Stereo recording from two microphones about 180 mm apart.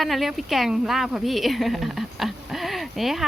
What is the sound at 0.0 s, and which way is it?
A woman's voice, centre (ahead or behind).